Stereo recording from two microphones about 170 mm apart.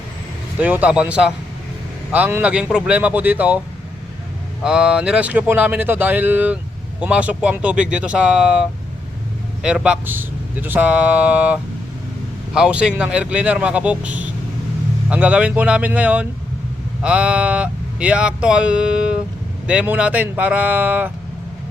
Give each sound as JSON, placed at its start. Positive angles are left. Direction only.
{"t": 0.6, "sound": "speech", "side_deg": -10}
{"t": 4.6, "sound": "speech", "side_deg": -5}
{"t": 9.6, "sound": "speech", "side_deg": -5}
{"t": 15.1, "sound": "speech", "side_deg": -10}